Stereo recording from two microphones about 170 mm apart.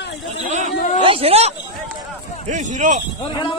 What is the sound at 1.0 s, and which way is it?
Speech, 35° right (ahead or behind).